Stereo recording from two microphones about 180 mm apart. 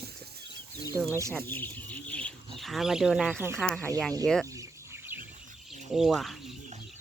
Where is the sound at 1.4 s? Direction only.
10° left (ahead or behind).